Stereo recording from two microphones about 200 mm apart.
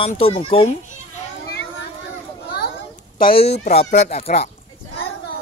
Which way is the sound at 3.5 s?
30° left (ahead or behind).